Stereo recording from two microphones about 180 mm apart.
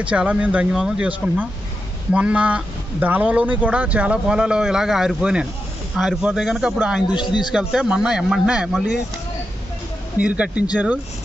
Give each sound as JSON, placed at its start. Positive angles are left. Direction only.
{"t": 0.0, "sound": "speech", "side_deg": -5}
{"t": 7.2, "sound": "a man's voice", "side_deg": 25}
{"t": 7.5, "sound": "speech", "side_deg": -5}
{"t": 10.1, "sound": "speech", "side_deg": -5}